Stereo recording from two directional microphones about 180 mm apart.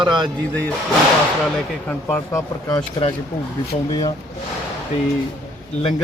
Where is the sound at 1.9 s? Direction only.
10° left (ahead or behind).